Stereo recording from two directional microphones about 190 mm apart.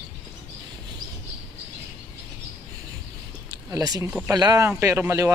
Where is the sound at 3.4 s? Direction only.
20° right (ahead or behind).